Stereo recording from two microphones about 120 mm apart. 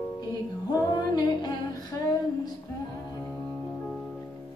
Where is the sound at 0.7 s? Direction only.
35° left (ahead or behind).